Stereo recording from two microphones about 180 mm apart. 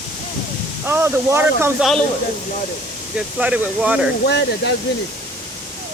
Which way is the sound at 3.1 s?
5° right (ahead or behind).